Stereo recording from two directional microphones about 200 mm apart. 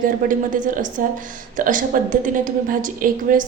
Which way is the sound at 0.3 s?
40° right (ahead or behind).